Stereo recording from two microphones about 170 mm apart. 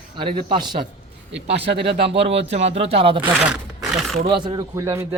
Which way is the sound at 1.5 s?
80° right.